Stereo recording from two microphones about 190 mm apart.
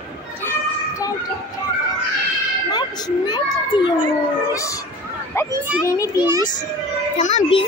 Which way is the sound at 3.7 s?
25° left (ahead or behind).